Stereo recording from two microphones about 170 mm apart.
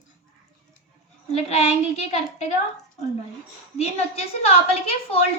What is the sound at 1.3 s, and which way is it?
A child's voice, 40° left (ahead or behind).